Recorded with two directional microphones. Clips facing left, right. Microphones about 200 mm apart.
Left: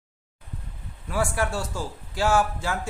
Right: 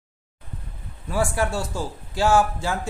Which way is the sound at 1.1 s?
25° right (ahead or behind).